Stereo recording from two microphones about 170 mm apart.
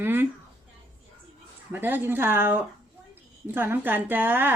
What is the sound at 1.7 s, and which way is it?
A woman's voice, 10° right (ahead or behind).